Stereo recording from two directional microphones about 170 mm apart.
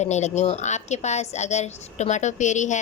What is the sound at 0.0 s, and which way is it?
A woman's voice, 45° left (ahead or behind).